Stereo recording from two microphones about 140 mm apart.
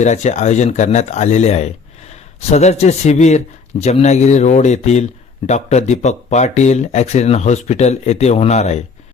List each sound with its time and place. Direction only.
0.0 s speech: 55° left (ahead or behind)